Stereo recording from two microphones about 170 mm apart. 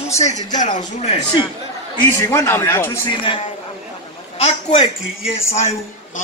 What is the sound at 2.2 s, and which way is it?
Speech, 15° left (ahead or behind).